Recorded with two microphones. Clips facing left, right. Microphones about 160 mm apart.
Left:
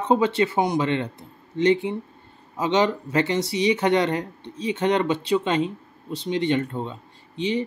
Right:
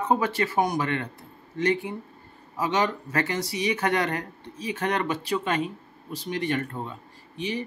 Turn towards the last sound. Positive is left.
turn(degrees=25)  # may be behind; listen again after turning